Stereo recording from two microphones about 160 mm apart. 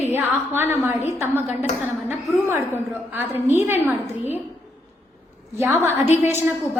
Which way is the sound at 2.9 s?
10° right (ahead or behind).